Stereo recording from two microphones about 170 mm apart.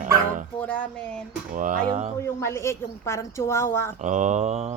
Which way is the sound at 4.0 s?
45° right (ahead or behind).